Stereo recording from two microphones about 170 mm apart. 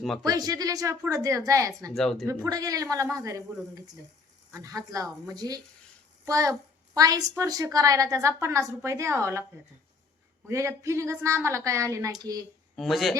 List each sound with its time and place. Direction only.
0.0 s speech: centre (ahead or behind)
0.3 s a woman's voice: 20° right (ahead or behind)
1.9 s speech: centre (ahead or behind)
2.2 s a woman's voice: 20° right (ahead or behind)
10.4 s a woman's voice: 15° right (ahead or behind)
12.7 s speech: centre (ahead or behind)